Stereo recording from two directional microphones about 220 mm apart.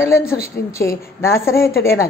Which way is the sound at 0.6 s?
45° left (ahead or behind).